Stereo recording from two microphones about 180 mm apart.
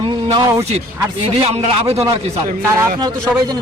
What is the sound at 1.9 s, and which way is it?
Speech, 20° right (ahead or behind).